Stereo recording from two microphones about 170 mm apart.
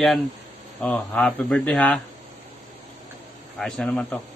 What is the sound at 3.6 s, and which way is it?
Speech, 5° left (ahead or behind).